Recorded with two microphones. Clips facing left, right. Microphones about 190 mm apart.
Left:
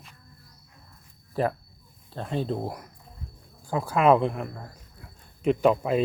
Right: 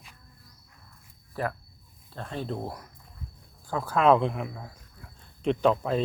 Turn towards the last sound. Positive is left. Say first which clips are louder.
# left 2 dB
turn(degrees=10)  # may be behind; listen again after turning